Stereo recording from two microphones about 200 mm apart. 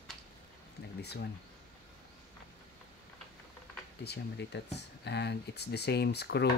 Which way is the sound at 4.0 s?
55° left (ahead or behind).